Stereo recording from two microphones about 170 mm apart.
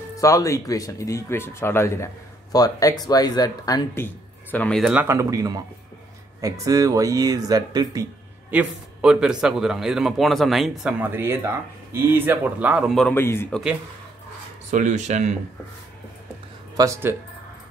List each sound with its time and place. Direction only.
0.2 s speech: 20° left (ahead or behind)
4.9 s speech: 15° right (ahead or behind)
8.5 s a man's voice: 5° right (ahead or behind)
12.9 s a man's voice: 5° left (ahead or behind)
14.7 s speech: 45° right (ahead or behind)
16.7 s speech: 20° right (ahead or behind)